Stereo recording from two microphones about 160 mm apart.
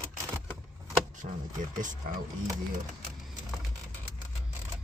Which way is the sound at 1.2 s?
50° right (ahead or behind).